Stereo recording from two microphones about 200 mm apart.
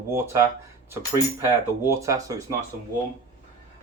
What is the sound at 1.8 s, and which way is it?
Speech, 15° right (ahead or behind).